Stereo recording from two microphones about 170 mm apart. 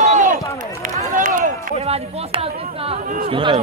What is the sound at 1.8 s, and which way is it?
Speech, 35° right (ahead or behind).